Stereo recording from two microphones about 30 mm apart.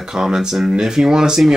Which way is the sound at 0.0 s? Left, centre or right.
Right.